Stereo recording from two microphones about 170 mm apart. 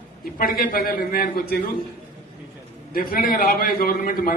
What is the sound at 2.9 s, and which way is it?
A man's voice, 55° left (ahead or behind).